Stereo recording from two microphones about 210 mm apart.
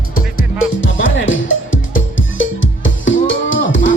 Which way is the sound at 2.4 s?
65° left (ahead or behind).